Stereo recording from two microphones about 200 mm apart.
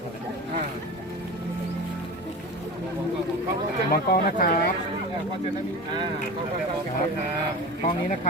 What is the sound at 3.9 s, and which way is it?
Speech, 50° left (ahead or behind).